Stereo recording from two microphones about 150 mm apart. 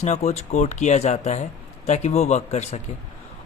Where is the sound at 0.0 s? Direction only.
50° left (ahead or behind).